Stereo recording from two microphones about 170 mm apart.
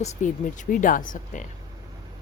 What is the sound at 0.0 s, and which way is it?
Speech, 50° left (ahead or behind).